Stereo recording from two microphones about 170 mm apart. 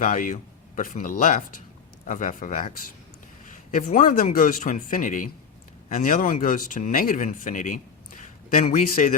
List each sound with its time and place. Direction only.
0.0 s speech: 50° left (ahead or behind)